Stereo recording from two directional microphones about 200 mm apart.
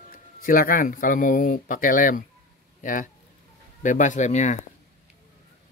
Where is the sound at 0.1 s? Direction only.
45° left (ahead or behind).